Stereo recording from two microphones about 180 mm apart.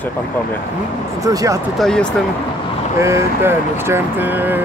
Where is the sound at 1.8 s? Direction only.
5° left (ahead or behind).